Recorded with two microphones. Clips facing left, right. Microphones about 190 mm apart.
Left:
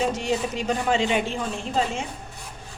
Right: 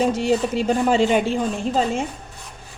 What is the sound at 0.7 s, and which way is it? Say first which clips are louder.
Speech: right 5 dB; 40° right (ahead or behind).